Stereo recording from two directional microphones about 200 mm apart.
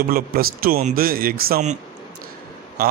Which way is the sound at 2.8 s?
50° right (ahead or behind).